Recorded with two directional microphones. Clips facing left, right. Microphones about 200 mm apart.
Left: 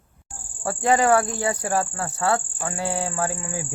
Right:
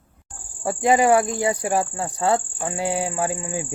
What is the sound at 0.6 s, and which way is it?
Speech, 15° right (ahead or behind).